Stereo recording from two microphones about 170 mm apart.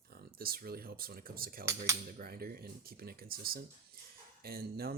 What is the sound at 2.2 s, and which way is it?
Speech, 60° right (ahead or behind).